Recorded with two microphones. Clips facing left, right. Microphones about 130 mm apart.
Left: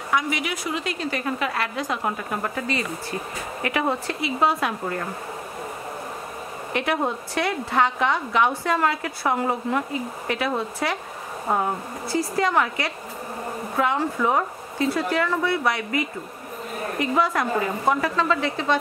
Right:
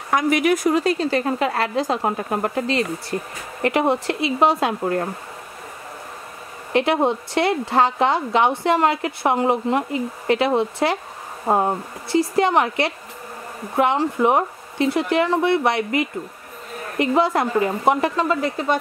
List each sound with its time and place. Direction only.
0.1 s a woman's voice: 50° right (ahead or behind); by 2.6 s 30° right (ahead or behind)
3.7 s a woman's voice: 25° right (ahead or behind)
6.7 s a woman's voice: 30° right (ahead or behind)
17.0 s a woman's voice: 25° right (ahead or behind)
18.3 s a woman's voice: 40° right (ahead or behind)